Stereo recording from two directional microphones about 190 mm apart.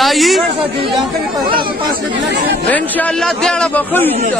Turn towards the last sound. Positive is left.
turn(degrees=10)  # may be behind; listen again after turning